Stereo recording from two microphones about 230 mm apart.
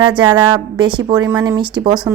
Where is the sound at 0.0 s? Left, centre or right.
Right.